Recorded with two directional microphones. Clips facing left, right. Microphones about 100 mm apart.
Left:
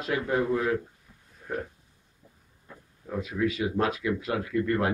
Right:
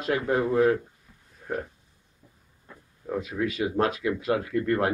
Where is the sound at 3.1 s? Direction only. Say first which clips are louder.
Even; 50° right (ahead or behind).